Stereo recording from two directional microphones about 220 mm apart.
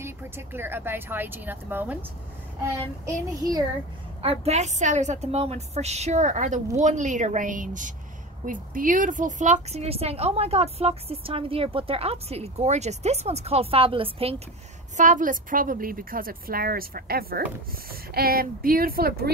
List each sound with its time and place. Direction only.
0.0 s a woman's voice: 10° right (ahead or behind)
4.2 s a woman's voice: 30° right (ahead or behind)
15.0 s a woman's voice: 35° right (ahead or behind)